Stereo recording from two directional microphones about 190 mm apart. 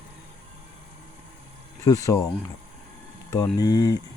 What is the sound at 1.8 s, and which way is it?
Speech, 15° left (ahead or behind).